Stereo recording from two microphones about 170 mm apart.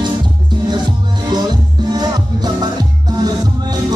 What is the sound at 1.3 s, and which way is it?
Music, 25° right (ahead or behind).